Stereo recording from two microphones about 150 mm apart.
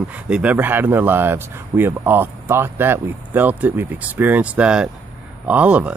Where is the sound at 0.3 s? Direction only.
10° right (ahead or behind).